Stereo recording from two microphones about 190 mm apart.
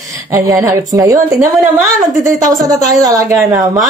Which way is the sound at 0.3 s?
15° right (ahead or behind).